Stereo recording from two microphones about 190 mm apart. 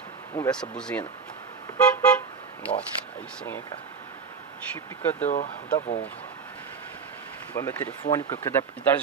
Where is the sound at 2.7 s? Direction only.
25° left (ahead or behind).